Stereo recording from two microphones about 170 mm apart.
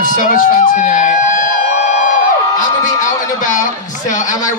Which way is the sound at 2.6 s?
50° left (ahead or behind).